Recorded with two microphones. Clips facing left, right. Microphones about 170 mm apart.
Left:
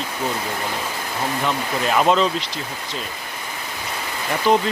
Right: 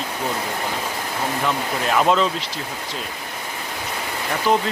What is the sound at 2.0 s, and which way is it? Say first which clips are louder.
Speech: left 1 dB; centre (ahead or behind).